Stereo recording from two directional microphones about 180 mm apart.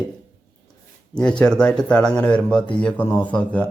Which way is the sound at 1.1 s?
5° left (ahead or behind).